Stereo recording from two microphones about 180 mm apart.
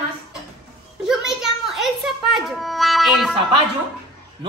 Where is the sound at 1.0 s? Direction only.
Centre (ahead or behind).